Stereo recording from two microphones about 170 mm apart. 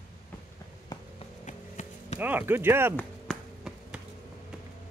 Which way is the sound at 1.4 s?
45° left (ahead or behind).